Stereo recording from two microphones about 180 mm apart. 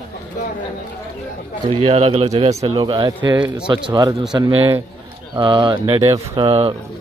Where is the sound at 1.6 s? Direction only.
35° right (ahead or behind).